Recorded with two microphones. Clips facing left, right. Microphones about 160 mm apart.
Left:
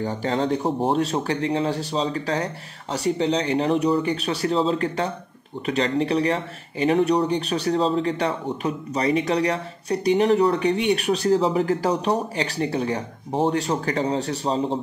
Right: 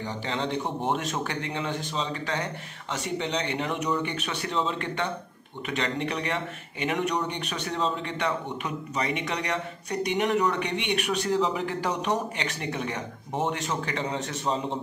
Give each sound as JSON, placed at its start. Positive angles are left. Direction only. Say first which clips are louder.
{"t": 0.0, "sound": "speech", "louder": "left 7 dB", "side_deg": 40}